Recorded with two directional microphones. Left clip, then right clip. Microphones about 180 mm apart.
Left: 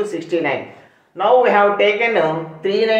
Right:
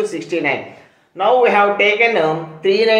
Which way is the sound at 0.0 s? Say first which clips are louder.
Right 1 dB; 15° right (ahead or behind).